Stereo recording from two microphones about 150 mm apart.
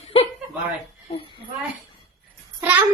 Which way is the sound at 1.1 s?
35° left (ahead or behind).